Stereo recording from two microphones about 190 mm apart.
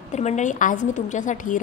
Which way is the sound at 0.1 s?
40° left (ahead or behind).